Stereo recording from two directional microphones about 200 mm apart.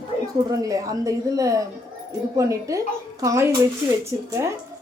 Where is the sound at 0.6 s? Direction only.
15° right (ahead or behind).